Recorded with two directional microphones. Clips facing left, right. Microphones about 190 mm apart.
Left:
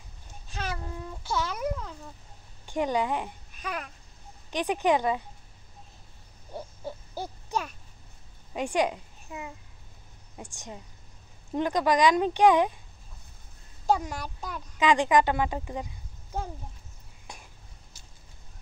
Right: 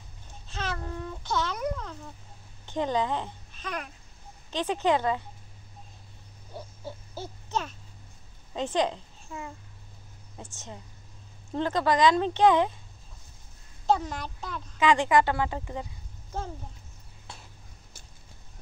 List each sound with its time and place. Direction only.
0.5 s a sound: 10° left (ahead or behind)
2.6 s a child's voice: 10° left (ahead or behind)
7.2 s owl: 10° left (ahead or behind)
8.5 s a child's voice: 10° left (ahead or behind)
13.8 s speech: 10° left (ahead or behind)
17.3 s a sound: 15° left (ahead or behind)